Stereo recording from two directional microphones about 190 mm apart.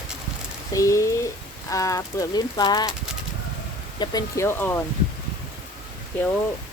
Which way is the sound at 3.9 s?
20° left (ahead or behind).